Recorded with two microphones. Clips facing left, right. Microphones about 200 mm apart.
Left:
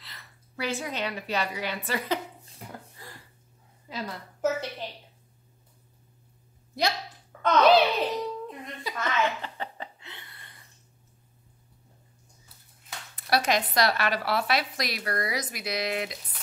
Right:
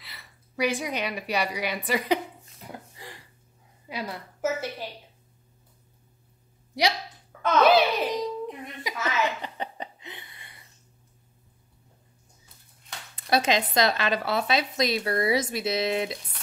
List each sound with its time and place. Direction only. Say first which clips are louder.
0.0 s a woman's voice: right 1 dB; 10° right (ahead or behind)
3.9 s a woman's voice: right 2 dB; 5° right (ahead or behind)
7.4 s baby laughter: even; 15° right (ahead or behind)
8.8 s a sound: even; 5° right (ahead or behind)
9.6 s a sound: right 2 dB; 20° right (ahead or behind)
13.1 s speech: right 2 dB; 20° right (ahead or behind)